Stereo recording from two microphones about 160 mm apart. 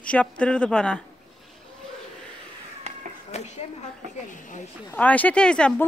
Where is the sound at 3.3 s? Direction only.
45° left (ahead or behind).